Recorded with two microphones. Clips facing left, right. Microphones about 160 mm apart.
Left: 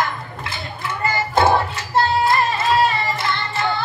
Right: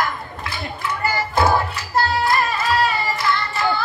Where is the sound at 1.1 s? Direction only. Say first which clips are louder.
Left 2 dB; 25° left (ahead or behind).